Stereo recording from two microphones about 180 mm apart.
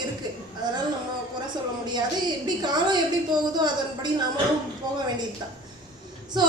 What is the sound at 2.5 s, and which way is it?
Speech, 25° right (ahead or behind).